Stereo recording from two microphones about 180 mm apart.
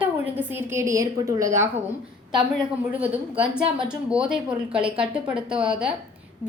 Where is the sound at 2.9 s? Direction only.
10° right (ahead or behind).